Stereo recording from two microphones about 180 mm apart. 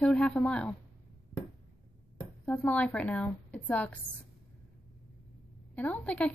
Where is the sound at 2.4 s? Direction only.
10° left (ahead or behind).